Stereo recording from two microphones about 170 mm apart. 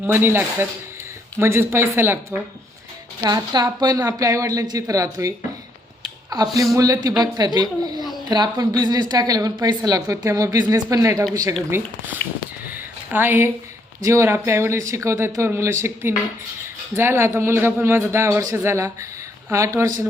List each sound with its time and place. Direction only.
0.0 s speech: 15° right (ahead or behind)
3.2 s a woman's voice: 25° right (ahead or behind)
6.3 s a woman's voice: 20° right (ahead or behind)
12.7 s a sound: 10° right (ahead or behind)
14.0 s speech: 15° right (ahead or behind)